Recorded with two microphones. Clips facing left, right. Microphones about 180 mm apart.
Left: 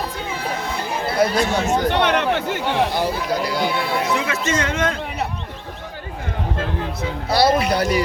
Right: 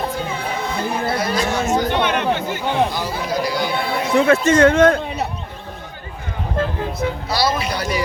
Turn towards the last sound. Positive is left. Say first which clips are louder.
# left 4 dB
turn(degrees=60)  # may be behind; listen again after turning